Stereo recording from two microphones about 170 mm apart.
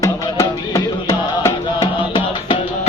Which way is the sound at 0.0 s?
20° left (ahead or behind).